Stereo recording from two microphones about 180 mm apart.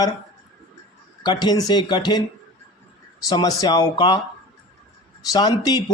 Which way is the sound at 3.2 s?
20° left (ahead or behind).